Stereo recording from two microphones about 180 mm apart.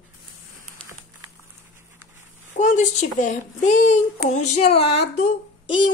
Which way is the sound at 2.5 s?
45° left (ahead or behind).